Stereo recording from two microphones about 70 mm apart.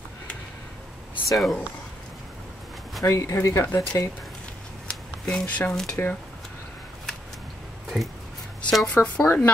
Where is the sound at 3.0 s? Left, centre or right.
Left.